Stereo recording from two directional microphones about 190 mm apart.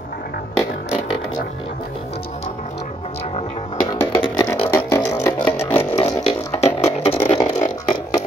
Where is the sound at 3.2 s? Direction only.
30° left (ahead or behind).